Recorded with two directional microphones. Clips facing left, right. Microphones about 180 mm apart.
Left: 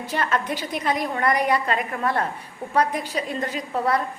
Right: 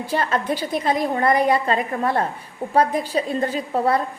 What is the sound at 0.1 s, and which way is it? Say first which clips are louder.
A woman's voice: right 3 dB; 30° right (ahead or behind).